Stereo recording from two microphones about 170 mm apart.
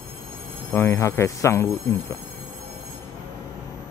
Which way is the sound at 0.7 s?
15° left (ahead or behind).